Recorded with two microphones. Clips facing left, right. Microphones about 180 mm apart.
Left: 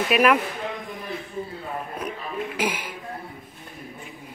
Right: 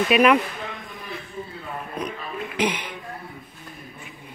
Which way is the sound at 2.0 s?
5° left (ahead or behind).